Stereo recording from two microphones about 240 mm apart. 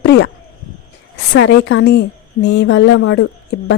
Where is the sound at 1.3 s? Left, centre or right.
Left.